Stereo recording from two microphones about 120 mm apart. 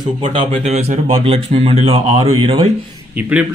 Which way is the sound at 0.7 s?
60° right (ahead or behind).